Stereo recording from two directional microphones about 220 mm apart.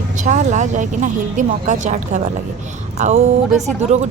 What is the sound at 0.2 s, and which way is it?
Speech, 35° right (ahead or behind).